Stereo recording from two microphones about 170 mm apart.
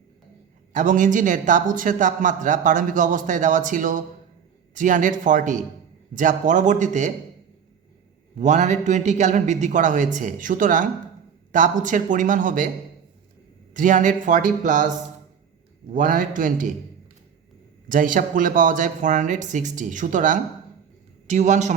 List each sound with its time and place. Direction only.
0.7 s a man's voice: 50° right (ahead or behind)
8.4 s a man's voice: 45° right (ahead or behind)
13.7 s a man's voice: 50° right (ahead or behind)
15.9 s a man's voice: 50° right (ahead or behind)
17.8 s a man's voice: 55° right (ahead or behind)